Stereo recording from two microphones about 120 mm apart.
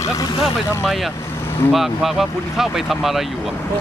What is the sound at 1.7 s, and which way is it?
Speech, centre (ahead or behind).